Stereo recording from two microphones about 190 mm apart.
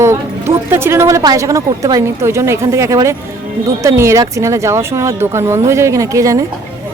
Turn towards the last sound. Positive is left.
turn(degrees=-15)  # may be behind; listen again after turning